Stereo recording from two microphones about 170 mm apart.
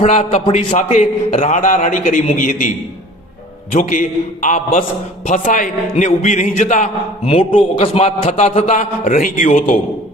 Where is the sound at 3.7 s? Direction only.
50° left (ahead or behind).